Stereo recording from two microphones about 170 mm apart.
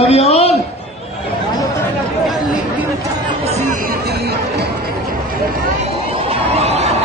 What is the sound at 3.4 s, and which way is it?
Chatter, 40° right (ahead or behind).